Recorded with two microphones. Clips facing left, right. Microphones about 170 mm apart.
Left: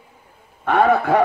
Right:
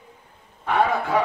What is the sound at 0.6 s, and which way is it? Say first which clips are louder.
Speech: left 6 dB; 60° left (ahead or behind).